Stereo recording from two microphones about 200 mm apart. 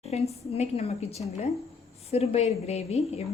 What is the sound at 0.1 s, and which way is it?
A woman's voice, 30° left (ahead or behind).